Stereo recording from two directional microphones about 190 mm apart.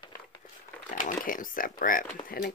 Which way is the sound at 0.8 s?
45° left (ahead or behind).